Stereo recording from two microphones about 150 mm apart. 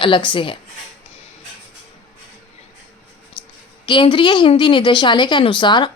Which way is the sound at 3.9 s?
35° left (ahead or behind).